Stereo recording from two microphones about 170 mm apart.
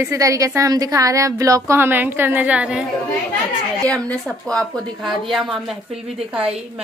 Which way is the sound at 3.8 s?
5° left (ahead or behind).